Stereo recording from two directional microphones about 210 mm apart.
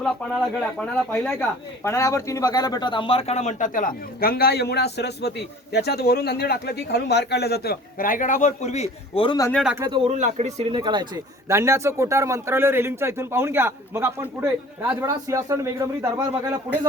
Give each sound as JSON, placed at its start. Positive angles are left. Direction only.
{"t": 0.8, "sound": "speech", "side_deg": 5}
{"t": 9.5, "sound": "speech", "side_deg": 0}
{"t": 9.7, "sound": "speech", "side_deg": -15}
{"t": 10.0, "sound": "speech", "side_deg": -30}